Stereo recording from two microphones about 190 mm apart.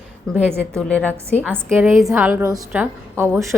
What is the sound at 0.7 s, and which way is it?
Speech, 5° left (ahead or behind).